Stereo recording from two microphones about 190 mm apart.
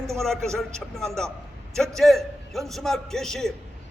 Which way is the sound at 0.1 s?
Centre (ahead or behind).